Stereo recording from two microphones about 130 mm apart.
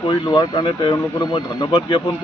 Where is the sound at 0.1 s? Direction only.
35° left (ahead or behind).